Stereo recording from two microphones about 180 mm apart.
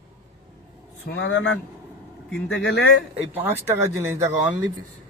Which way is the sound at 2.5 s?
85° left.